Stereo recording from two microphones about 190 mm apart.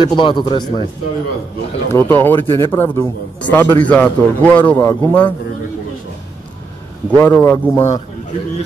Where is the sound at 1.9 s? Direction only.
10° left (ahead or behind).